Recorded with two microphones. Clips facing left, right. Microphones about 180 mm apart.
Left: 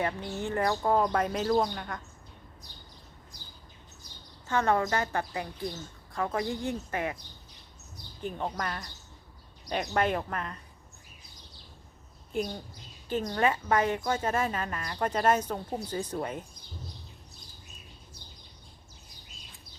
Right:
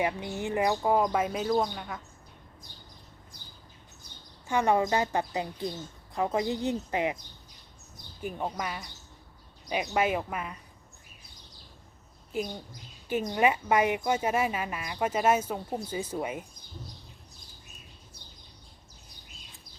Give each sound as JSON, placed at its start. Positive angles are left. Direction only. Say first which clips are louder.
{"t": 0.0, "sound": "speech", "louder": "right 1 dB", "side_deg": -15}
{"t": 4.4, "sound": "a woman's voice", "louder": "right 2 dB", "side_deg": -15}
{"t": 8.2, "sound": "speech", "louder": "even", "side_deg": -10}
{"t": 12.3, "sound": "speech", "louder": "left 1 dB", "side_deg": -5}